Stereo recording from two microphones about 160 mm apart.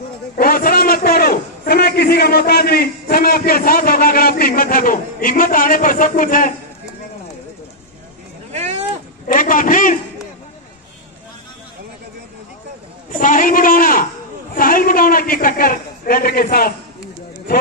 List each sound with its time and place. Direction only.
0.4 s a man's voice: 65° left (ahead or behind)
8.5 s a sound: 45° right (ahead or behind)
9.3 s a man's voice: 60° left (ahead or behind)
13.2 s a man's voice: 55° left (ahead or behind)